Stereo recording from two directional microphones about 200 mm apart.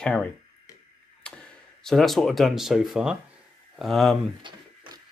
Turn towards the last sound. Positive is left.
turn(degrees=-25)  # may be behind; listen again after turning